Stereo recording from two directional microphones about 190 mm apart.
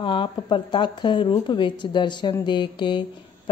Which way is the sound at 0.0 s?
25° left (ahead or behind).